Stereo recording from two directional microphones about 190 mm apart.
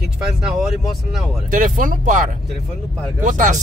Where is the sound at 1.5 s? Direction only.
45° right (ahead or behind).